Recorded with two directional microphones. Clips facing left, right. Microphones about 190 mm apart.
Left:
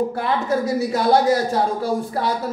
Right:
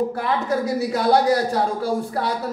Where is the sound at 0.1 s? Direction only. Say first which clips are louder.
Left 1 dB; 25° left (ahead or behind).